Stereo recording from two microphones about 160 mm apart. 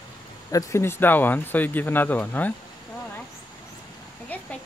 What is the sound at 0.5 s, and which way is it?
Speech, 15° left (ahead or behind).